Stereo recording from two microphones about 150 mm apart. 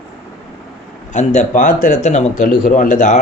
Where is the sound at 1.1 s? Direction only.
50° left (ahead or behind).